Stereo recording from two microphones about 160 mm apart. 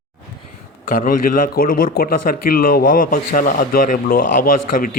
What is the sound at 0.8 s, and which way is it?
A man's voice, 60° left (ahead or behind).